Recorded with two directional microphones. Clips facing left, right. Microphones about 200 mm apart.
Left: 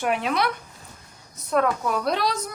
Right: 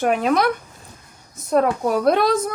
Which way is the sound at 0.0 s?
45° right (ahead or behind).